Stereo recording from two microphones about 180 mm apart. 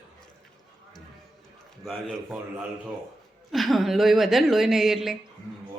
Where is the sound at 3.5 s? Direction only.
Centre (ahead or behind).